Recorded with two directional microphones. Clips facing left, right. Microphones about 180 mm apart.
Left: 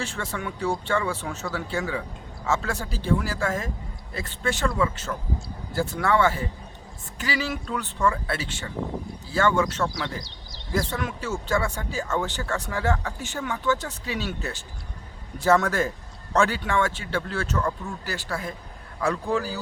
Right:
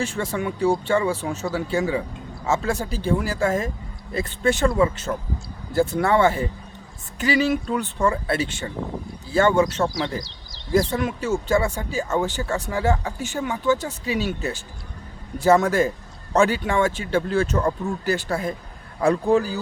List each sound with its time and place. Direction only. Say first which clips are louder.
0.0 s speech: right 6 dB; 15° right (ahead or behind)
9.7 s speech: right 5 dB; 35° right (ahead or behind)
10.9 s speech: right 6 dB; 15° right (ahead or behind)